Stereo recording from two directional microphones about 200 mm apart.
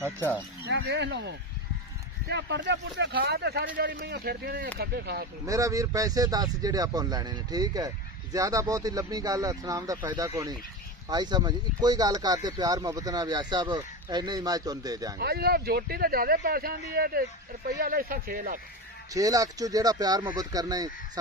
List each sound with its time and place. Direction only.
0.7 s speech: 60° right (ahead or behind)
5.4 s speech: 15° right (ahead or behind)
15.1 s speech: 50° right (ahead or behind)
19.1 s speech: 15° right (ahead or behind)